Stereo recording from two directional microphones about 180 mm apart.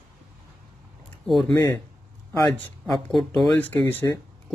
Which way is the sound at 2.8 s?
Centre (ahead or behind).